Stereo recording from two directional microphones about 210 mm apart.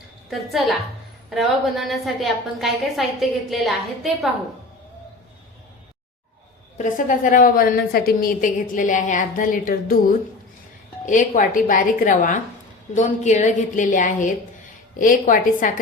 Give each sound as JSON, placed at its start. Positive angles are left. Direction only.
{"t": 1.3, "sound": "a woman's voice", "side_deg": 0}
{"t": 6.7, "sound": "a woman's voice", "side_deg": 35}